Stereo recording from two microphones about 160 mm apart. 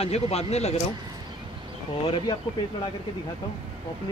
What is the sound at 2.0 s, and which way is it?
Speech, 35° left (ahead or behind).